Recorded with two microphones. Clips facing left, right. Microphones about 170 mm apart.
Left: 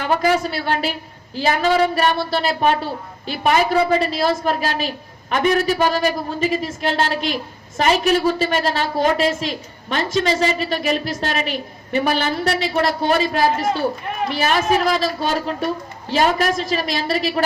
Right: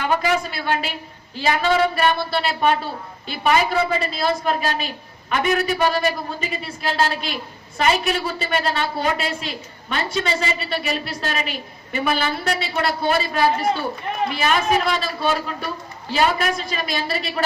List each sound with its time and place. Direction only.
0.0 s a woman's voice: 40° left (ahead or behind)